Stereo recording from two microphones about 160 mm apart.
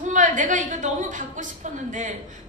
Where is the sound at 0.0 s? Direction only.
50° right (ahead or behind).